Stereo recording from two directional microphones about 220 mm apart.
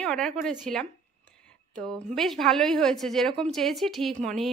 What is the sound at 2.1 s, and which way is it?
A woman's voice, centre (ahead or behind).